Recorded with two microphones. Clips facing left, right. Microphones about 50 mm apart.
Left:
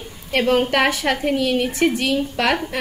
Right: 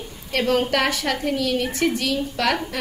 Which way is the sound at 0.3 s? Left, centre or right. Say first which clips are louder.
Left 3 dB; left.